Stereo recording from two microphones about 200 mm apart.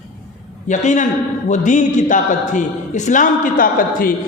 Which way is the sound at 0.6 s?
40° left (ahead or behind).